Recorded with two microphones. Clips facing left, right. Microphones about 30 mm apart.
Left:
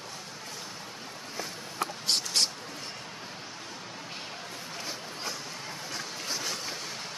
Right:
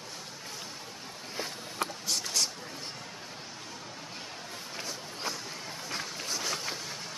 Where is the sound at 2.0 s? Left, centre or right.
Left.